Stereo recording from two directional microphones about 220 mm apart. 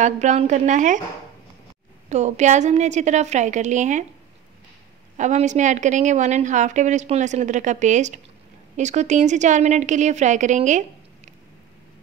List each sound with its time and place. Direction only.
0.0 s a woman's voice: 30° right (ahead or behind)
2.0 s a woman's voice: 30° right (ahead or behind)
5.1 s a woman's voice: 35° right (ahead or behind)